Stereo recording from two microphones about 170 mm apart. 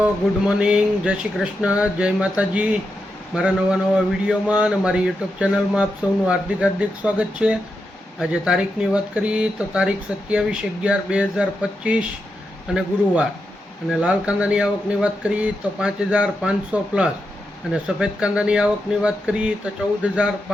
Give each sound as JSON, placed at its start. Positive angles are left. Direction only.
{"t": 0.0, "sound": "speech", "side_deg": -5}
{"t": 13.9, "sound": "speech", "side_deg": -5}